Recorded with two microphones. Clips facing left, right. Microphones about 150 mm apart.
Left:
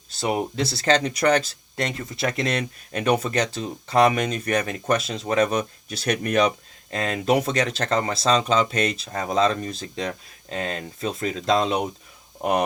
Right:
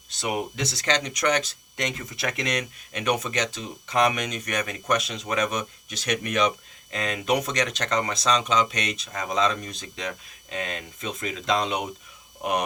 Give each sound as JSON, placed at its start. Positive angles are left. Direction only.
{"t": 0.2, "sound": "speech", "side_deg": 35}